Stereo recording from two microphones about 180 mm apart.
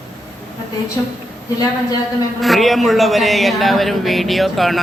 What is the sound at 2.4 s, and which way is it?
A man's voice, centre (ahead or behind).